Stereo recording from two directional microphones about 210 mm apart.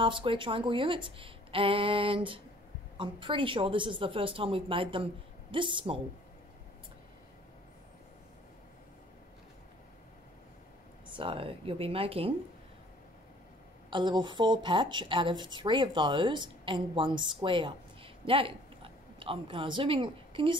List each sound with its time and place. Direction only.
0.0 s a woman's voice: 25° right (ahead or behind)
11.1 s a woman's voice: 25° right (ahead or behind)
13.8 s a woman's voice: 20° right (ahead or behind)